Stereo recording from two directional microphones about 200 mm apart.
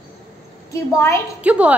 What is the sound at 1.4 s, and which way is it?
Speech, 5° right (ahead or behind).